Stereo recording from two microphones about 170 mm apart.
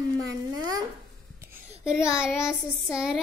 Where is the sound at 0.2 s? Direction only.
20° right (ahead or behind).